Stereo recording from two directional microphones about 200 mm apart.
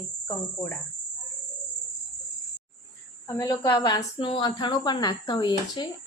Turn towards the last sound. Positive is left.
turn(degrees=20)  # may be behind; listen again after turning